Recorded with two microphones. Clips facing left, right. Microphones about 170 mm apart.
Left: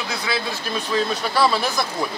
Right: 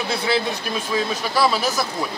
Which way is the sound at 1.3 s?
10° right (ahead or behind).